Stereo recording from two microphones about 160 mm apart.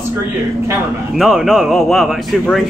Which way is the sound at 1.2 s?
5° right (ahead or behind).